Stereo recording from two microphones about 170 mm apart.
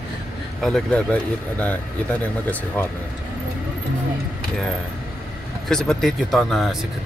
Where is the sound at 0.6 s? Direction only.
5° left (ahead or behind).